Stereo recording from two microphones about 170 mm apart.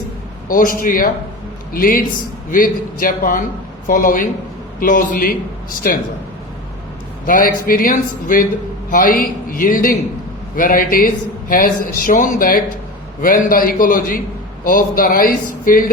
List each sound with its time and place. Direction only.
0.4 s a man's voice: 55° left (ahead or behind)
7.3 s speech: 55° left (ahead or behind)